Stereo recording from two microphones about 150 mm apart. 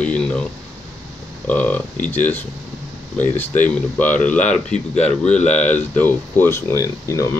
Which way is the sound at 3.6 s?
10° left (ahead or behind).